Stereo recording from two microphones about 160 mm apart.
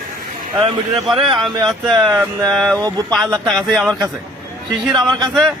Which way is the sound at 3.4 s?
Centre (ahead or behind).